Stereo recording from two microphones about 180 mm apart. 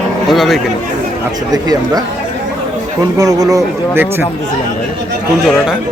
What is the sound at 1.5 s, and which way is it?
Speech, 20° right (ahead or behind).